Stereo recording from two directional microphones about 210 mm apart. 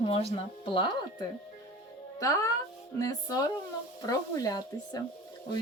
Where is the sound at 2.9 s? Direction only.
15° left (ahead or behind).